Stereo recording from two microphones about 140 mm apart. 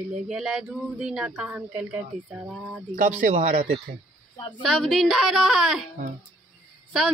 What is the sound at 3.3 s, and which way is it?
Speech, 60° right (ahead or behind).